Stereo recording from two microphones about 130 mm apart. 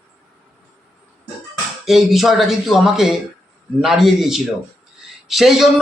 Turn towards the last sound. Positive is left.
turn(degrees=0)  # may be behind; listen again after turning